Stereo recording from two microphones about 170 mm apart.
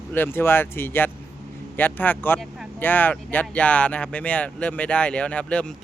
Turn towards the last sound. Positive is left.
turn(degrees=5)  # may be behind; listen again after turning